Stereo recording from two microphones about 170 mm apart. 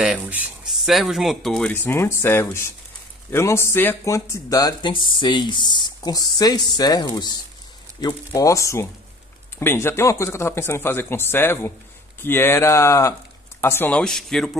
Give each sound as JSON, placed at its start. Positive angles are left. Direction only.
{"t": 0.0, "sound": "speech", "side_deg": -5}